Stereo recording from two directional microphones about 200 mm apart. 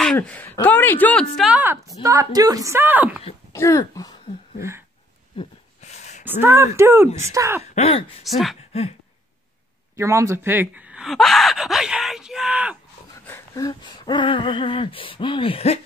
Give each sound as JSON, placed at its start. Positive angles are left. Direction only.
{"t": 0.0, "sound": "speech", "side_deg": 5}
{"t": 3.5, "sound": "speech", "side_deg": 15}
{"t": 4.6, "sound": "speech", "side_deg": -15}
{"t": 5.4, "sound": "speech", "side_deg": 30}
{"t": 5.8, "sound": "a sound", "side_deg": 35}
{"t": 6.4, "sound": "speech", "side_deg": -15}
{"t": 7.7, "sound": "speech", "side_deg": 30}
{"t": 8.2, "sound": "speech", "side_deg": 0}
{"t": 9.9, "sound": "speech", "side_deg": -15}
{"t": 13.3, "sound": "a sound", "side_deg": 20}